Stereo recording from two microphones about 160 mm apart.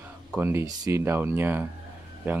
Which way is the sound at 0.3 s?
15° right (ahead or behind).